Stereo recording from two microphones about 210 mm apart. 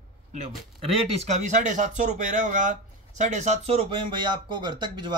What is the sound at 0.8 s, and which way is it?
A man's voice, 30° right (ahead or behind).